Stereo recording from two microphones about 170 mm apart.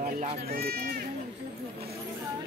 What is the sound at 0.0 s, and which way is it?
Speech, 50° right (ahead or behind).